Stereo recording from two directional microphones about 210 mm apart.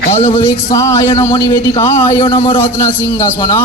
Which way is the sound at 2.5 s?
10° left (ahead or behind).